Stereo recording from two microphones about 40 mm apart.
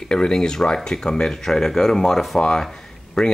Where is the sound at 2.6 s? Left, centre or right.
Centre.